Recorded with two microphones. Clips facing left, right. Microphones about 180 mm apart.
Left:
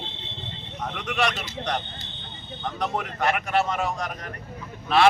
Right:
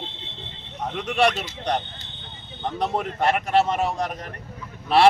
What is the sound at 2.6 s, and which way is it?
Speech, 30° right (ahead or behind).